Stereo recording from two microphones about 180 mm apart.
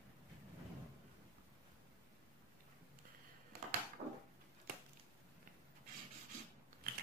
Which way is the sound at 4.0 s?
65° right (ahead or behind).